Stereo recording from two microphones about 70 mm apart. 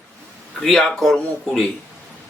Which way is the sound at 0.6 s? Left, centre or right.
Centre.